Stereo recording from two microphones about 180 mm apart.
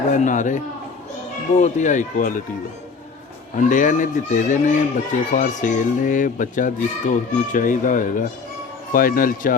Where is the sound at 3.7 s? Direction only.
45° left (ahead or behind).